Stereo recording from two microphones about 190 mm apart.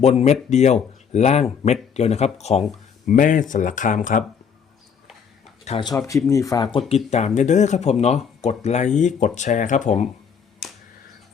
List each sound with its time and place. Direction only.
0.0 s speech: 35° left (ahead or behind)
5.6 s speech: 30° left (ahead or behind)
5.9 s speech: 15° left (ahead or behind); by 10.1 s 40° left (ahead or behind)